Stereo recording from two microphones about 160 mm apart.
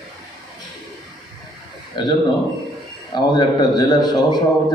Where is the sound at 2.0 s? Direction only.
30° left (ahead or behind).